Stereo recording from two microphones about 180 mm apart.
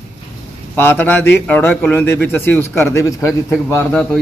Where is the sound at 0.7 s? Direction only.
10° left (ahead or behind).